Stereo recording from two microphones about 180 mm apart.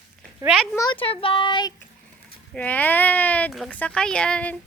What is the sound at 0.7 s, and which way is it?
Speech, 20° left (ahead or behind).